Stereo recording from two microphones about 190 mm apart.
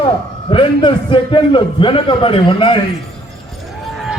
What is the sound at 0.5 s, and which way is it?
A man's voice, 25° left (ahead or behind).